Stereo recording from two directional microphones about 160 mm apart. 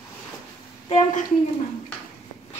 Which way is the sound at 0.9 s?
50° left (ahead or behind).